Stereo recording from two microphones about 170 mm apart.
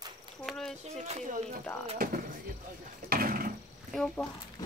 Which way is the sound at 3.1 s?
60° right (ahead or behind).